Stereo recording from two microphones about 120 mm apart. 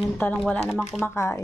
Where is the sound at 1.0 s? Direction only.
20° left (ahead or behind).